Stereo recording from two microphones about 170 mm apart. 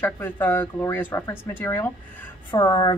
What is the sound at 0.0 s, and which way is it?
A woman's voice, 10° left (ahead or behind).